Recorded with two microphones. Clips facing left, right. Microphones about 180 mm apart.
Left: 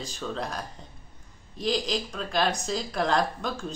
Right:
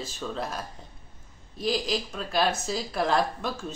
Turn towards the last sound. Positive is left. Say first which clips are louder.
# left 1 dB
turn(degrees=-5)  # may be behind; listen again after turning